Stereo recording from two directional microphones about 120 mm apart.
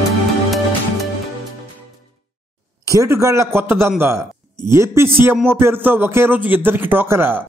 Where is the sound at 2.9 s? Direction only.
25° right (ahead or behind).